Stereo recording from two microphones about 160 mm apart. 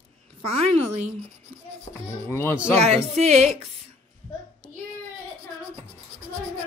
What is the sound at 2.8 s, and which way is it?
Speech, 40° right (ahead or behind).